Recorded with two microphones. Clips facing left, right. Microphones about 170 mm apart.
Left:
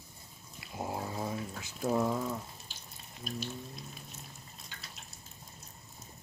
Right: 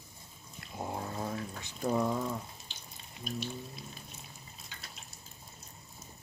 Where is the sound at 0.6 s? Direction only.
5° left (ahead or behind).